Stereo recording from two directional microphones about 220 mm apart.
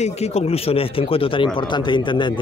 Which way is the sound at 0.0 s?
30° left (ahead or behind).